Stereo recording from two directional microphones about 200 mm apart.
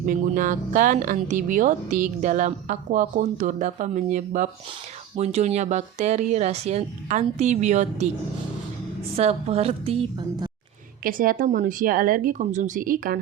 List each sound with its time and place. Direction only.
0.0 s speech: 45° right (ahead or behind)
9.1 s speech: 30° right (ahead or behind)
11.0 s speech: 45° right (ahead or behind)